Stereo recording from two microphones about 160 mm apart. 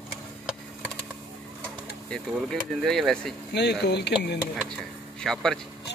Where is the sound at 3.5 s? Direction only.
90° left.